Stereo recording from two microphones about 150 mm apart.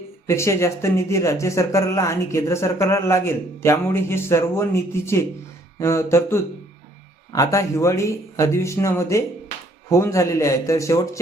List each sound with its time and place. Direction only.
0.3 s speech: 20° left (ahead or behind)
5.8 s a sound: 20° left (ahead or behind)
7.3 s speech: 20° left (ahead or behind)